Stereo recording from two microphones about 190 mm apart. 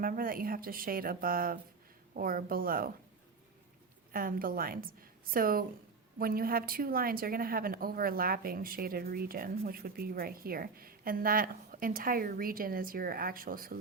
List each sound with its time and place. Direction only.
0.0 s a woman's voice: 50° right (ahead or behind)
4.1 s a woman's voice: 50° right (ahead or behind)